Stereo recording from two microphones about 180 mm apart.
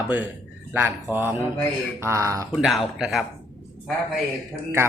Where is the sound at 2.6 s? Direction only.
Centre (ahead or behind).